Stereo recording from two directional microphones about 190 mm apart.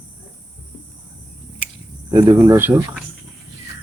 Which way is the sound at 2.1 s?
15° right (ahead or behind).